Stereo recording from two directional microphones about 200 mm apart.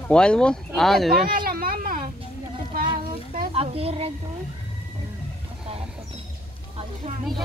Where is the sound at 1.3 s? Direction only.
45° right (ahead or behind).